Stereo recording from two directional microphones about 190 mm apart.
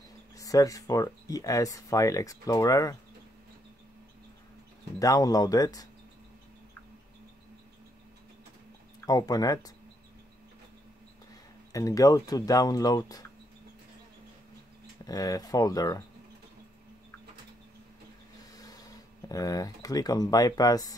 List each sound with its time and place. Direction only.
0.4 s speech: 20° left (ahead or behind)
4.9 s speech: 20° left (ahead or behind)
9.0 s speech: 20° left (ahead or behind)
11.7 s speech: 20° left (ahead or behind)
15.0 s speech: 20° left (ahead or behind)
18.4 s speech: 20° left (ahead or behind)